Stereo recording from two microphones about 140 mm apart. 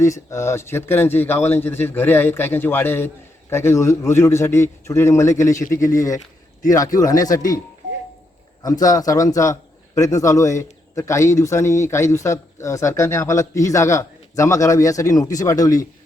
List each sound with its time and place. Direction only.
0.0 s a man's voice: 20° left (ahead or behind)
8.6 s a man's voice: 25° left (ahead or behind)